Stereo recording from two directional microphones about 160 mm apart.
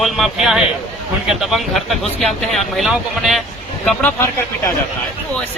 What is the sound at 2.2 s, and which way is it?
Speech, centre (ahead or behind).